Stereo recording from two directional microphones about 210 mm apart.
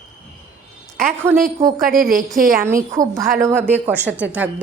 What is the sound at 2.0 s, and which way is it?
Speech, centre (ahead or behind).